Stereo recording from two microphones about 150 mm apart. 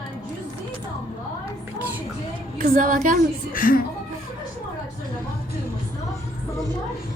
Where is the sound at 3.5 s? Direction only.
70° left (ahead or behind).